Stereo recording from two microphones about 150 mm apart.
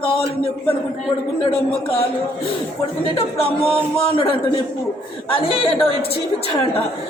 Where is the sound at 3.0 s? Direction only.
40° left (ahead or behind).